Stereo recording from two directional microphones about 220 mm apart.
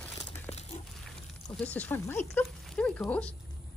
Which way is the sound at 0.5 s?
30° left (ahead or behind).